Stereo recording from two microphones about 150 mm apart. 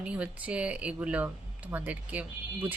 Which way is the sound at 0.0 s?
10° right (ahead or behind).